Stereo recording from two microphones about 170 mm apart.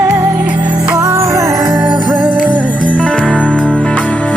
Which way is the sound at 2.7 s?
5° left (ahead or behind).